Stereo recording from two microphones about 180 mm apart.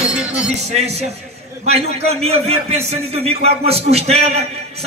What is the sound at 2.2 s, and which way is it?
A man's voice, 35° right (ahead or behind).